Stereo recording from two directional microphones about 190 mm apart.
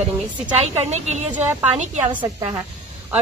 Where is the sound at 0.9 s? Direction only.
35° right (ahead or behind).